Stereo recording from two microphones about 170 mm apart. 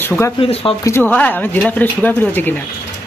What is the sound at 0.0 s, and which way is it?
Speech, 10° left (ahead or behind).